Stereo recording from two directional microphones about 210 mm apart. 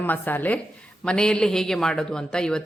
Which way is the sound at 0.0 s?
10° left (ahead or behind).